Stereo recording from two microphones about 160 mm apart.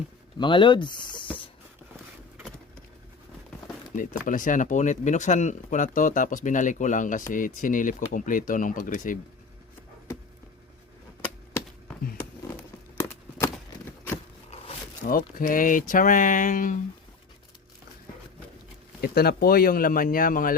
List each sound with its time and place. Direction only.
0.3 s speech: 30° left (ahead or behind)
3.9 s speech: 55° left (ahead or behind)
15.0 s speech: 65° left (ahead or behind)
19.0 s speech: 75° left (ahead or behind); by 20.6 s 60° left (ahead or behind)